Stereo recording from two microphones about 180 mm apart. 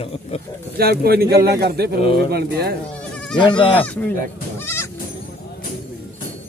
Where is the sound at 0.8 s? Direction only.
60° right (ahead or behind).